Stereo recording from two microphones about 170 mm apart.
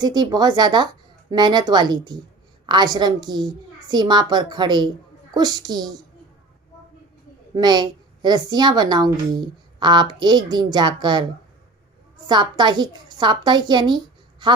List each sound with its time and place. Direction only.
0.0 s a woman's voice: 25° right (ahead or behind)
7.5 s a woman's voice: 25° right (ahead or behind)
12.3 s a woman's voice: 25° right (ahead or behind)